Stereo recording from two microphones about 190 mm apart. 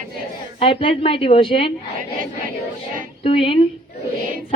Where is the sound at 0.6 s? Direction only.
30° left (ahead or behind).